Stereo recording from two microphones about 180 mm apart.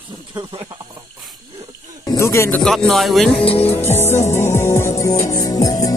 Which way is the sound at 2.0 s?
15° left (ahead or behind).